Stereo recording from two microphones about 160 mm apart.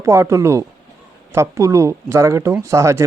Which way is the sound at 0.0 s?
15° right (ahead or behind).